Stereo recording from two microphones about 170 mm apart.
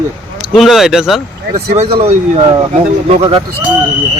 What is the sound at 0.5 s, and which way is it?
Speech, centre (ahead or behind).